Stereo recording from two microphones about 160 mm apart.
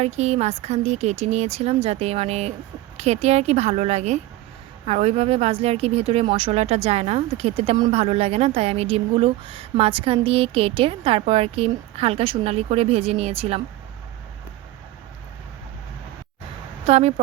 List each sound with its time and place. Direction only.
0.0 s a woman's voice: 45° right (ahead or behind)
16.8 s a woman's voice: 40° right (ahead or behind)